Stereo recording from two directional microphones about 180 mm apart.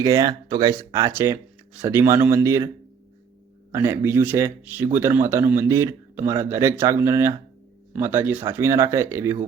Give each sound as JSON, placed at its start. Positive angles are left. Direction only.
{"t": 0.0, "sound": "speech", "side_deg": -20}
{"t": 3.7, "sound": "speech", "side_deg": -15}